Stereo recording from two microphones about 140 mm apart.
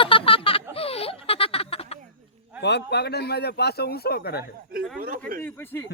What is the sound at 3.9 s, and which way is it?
Speech, 90° left.